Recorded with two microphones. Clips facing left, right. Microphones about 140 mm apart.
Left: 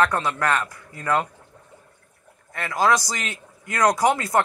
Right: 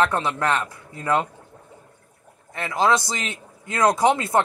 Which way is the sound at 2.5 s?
25° right (ahead or behind).